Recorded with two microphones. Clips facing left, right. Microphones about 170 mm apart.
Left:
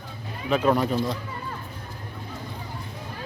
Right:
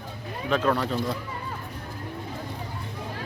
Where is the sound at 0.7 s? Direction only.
15° left (ahead or behind).